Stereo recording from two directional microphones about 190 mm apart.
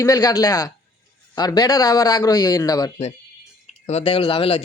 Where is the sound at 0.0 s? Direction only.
15° left (ahead or behind).